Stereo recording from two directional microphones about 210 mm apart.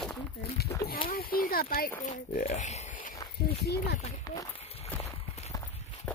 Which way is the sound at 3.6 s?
50° left (ahead or behind).